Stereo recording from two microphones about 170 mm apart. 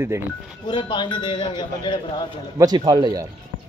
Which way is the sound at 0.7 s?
25° left (ahead or behind).